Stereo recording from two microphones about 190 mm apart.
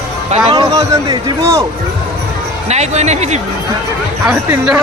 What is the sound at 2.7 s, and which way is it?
Speech, 35° right (ahead or behind).